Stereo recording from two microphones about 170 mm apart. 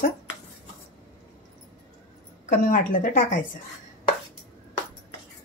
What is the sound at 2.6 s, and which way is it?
Speech, 55° left (ahead or behind).